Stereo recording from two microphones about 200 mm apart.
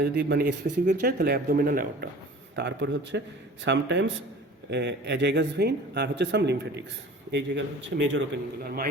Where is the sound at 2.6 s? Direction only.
60° right (ahead or behind).